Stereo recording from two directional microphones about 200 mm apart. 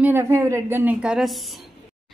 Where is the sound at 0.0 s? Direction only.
10° right (ahead or behind).